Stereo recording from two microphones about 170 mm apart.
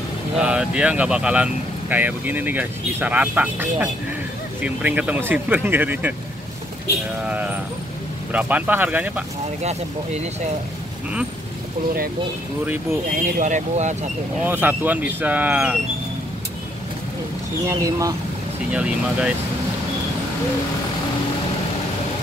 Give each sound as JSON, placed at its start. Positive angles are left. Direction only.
{"t": 0.4, "sound": "speech", "side_deg": -5}
{"t": 7.2, "sound": "speech", "side_deg": -10}
{"t": 13.1, "sound": "speech", "side_deg": -50}
{"t": 14.4, "sound": "speech", "side_deg": -10}
{"t": 17.6, "sound": "speech", "side_deg": -15}
{"t": 18.7, "sound": "speech", "side_deg": -5}